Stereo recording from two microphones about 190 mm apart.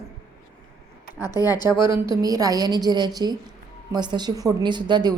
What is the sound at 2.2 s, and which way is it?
A woman's voice, 20° right (ahead or behind).